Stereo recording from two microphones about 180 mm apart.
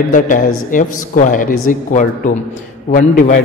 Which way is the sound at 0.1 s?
45° left (ahead or behind).